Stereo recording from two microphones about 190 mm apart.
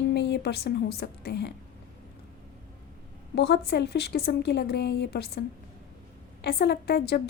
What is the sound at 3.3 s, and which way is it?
A woman's voice, 60° left (ahead or behind).